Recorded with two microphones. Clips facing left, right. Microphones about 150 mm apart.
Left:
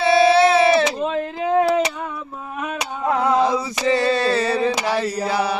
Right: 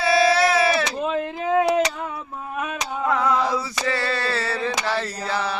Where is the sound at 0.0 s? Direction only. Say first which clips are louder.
Left 4 dB; 25° left (ahead or behind).